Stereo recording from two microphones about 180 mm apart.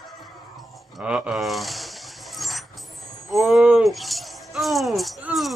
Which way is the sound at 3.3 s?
Centre (ahead or behind).